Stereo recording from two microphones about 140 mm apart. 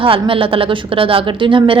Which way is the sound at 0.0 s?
40° right (ahead or behind).